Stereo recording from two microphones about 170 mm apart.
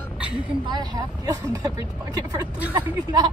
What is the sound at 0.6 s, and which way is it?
Speech, 25° right (ahead or behind).